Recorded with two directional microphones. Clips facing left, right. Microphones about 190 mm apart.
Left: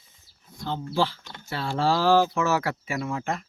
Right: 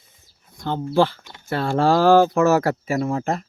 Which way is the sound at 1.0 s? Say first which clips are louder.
Right 8 dB; 55° right (ahead or behind).